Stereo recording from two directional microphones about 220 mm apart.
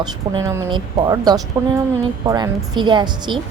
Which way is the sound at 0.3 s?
15° right (ahead or behind).